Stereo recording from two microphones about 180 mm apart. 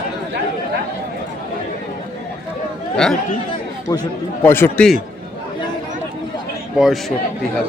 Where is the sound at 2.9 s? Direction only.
5° left (ahead or behind).